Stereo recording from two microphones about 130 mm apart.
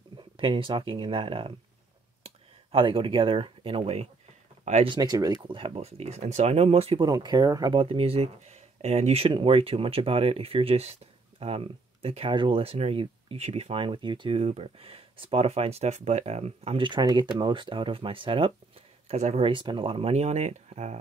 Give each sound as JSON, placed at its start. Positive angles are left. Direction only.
{"t": 0.4, "sound": "speech", "side_deg": -40}
{"t": 4.8, "sound": "speech", "side_deg": -35}
{"t": 5.4, "sound": "speech", "side_deg": -40}
{"t": 7.1, "sound": "speech", "side_deg": -30}
{"t": 7.7, "sound": "speech", "side_deg": -45}